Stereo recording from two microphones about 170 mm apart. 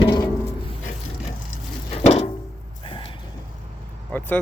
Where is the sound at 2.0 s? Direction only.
40° left (ahead or behind).